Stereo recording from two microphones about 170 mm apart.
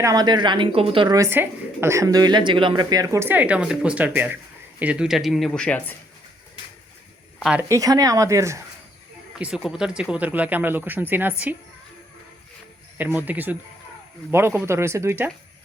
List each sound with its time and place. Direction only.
0.0 s a woman's voice: 20° right (ahead or behind); by 5.9 s 5° left (ahead or behind)
7.7 s a woman's voice: 20° right (ahead or behind)
9.4 s speech: 5° right (ahead or behind)
13.0 s speech: 10° right (ahead or behind)